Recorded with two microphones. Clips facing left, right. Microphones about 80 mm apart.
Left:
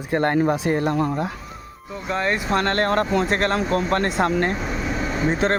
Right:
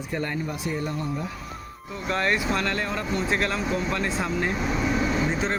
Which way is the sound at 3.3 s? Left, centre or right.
Left.